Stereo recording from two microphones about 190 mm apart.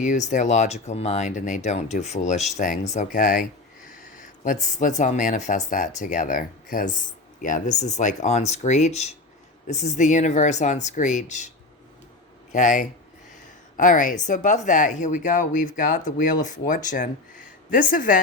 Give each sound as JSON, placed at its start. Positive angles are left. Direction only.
{"t": 0.0, "sound": "speech", "side_deg": 40}
{"t": 12.5, "sound": "speech", "side_deg": 40}